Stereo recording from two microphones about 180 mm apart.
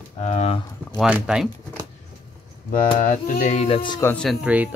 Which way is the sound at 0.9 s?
5° right (ahead or behind).